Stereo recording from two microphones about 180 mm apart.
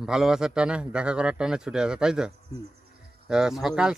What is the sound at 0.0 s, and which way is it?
A man's voice, 5° right (ahead or behind).